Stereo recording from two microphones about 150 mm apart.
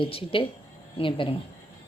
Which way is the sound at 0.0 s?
35° left (ahead or behind).